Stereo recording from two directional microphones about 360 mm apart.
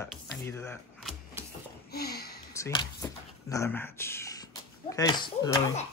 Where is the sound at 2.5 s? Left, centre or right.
Centre.